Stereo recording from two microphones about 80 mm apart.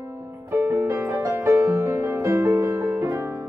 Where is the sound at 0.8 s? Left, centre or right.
Right.